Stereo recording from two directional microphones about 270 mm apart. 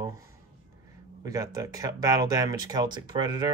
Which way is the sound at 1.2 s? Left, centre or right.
Centre.